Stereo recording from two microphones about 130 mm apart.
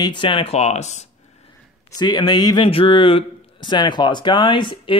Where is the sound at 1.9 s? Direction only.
35° left (ahead or behind).